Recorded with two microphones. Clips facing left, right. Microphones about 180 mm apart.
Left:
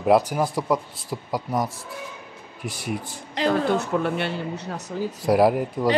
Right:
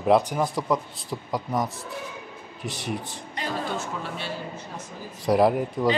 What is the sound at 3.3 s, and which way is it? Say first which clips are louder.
A woman's voice: left 9 dB; 70° left (ahead or behind).